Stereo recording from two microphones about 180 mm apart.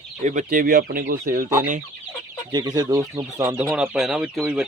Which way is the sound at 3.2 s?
15° right (ahead or behind).